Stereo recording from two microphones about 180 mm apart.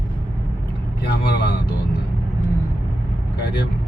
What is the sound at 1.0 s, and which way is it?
Speech, 70° left (ahead or behind).